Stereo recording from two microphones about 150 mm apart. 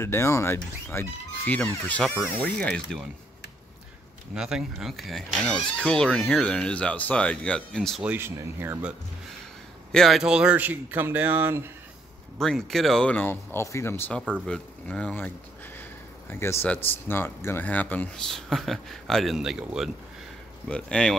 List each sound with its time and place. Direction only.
0.0 s speech: 15° left (ahead or behind)
4.4 s speech: 5° right (ahead or behind)
8.0 s speech: 15° right (ahead or behind)
9.9 s speech: centre (ahead or behind)
12.4 s speech: 5° left (ahead or behind)